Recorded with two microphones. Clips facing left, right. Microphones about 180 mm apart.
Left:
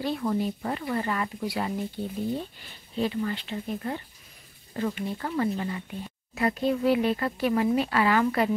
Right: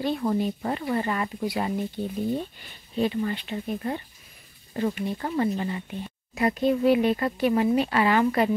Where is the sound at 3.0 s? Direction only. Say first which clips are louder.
Right 2 dB; 15° right (ahead or behind).